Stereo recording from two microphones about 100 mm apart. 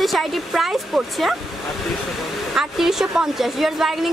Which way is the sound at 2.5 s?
5° right (ahead or behind).